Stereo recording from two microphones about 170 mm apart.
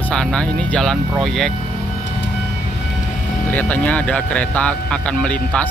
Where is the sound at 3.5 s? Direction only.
10° left (ahead or behind).